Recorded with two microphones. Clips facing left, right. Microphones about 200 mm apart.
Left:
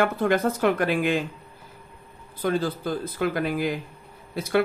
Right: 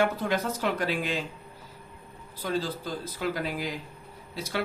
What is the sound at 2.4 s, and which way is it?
Speech, 55° left (ahead or behind).